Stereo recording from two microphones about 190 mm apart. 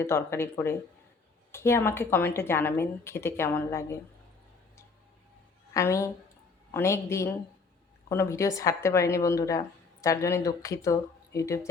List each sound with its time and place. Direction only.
0.0 s a woman's voice: 15° left (ahead or behind)
5.7 s a woman's voice: 15° left (ahead or behind)